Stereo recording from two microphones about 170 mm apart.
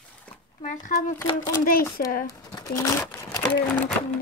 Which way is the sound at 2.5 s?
20° left (ahead or behind).